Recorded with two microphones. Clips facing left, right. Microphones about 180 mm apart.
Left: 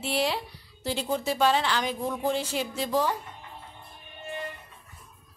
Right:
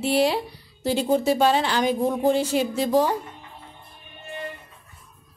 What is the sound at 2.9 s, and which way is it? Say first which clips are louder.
Speech: right 5 dB; 45° right (ahead or behind).